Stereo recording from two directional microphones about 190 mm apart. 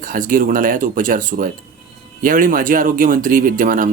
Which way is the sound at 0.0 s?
45° right (ahead or behind).